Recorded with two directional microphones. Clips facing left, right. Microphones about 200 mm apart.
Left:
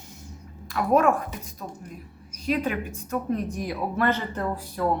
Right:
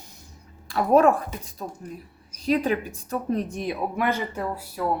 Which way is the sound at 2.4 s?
35° right (ahead or behind).